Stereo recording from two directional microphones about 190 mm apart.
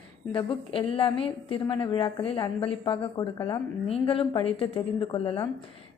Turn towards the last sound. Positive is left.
turn(degrees=30)  # may be behind; listen again after turning